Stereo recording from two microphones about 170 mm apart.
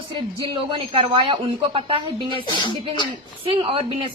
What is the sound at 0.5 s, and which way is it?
A woman's voice, 30° right (ahead or behind).